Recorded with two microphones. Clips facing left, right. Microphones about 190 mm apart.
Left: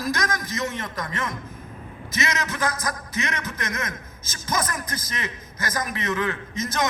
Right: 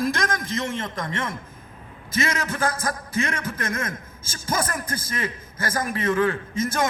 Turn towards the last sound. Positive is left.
turn(degrees=-30)  # may be behind; listen again after turning